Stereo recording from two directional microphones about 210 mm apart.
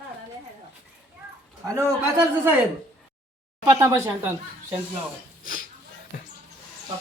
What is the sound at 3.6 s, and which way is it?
Speech, 15° right (ahead or behind).